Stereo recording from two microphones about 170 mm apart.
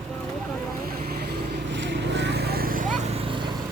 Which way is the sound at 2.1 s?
85° right.